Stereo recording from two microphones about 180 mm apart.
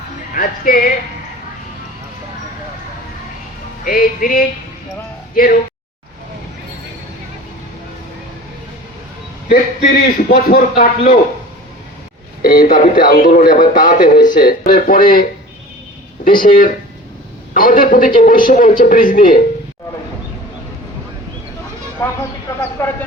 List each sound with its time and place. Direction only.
0.3 s speech: 50° left (ahead or behind)
3.8 s speech: 50° left (ahead or behind)
9.5 s speech: 55° left (ahead or behind)
12.4 s speech: 50° left (ahead or behind)
22.0 s speech: 20° left (ahead or behind)